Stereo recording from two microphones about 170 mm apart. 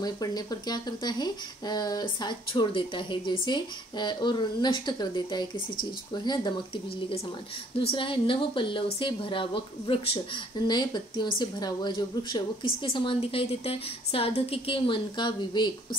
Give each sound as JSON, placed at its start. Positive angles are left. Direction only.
{"t": 0.0, "sound": "speech", "side_deg": 25}